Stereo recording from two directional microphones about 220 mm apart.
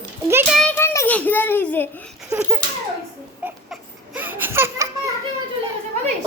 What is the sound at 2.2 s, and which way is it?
Laughter, 10° right (ahead or behind).